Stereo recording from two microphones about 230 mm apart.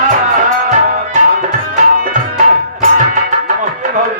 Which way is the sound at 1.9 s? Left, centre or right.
Right.